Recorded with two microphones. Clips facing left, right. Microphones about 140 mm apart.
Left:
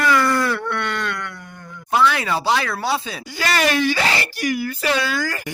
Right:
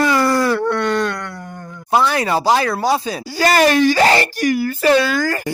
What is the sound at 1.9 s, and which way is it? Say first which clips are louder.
Speech: right 3 dB; 40° right (ahead or behind).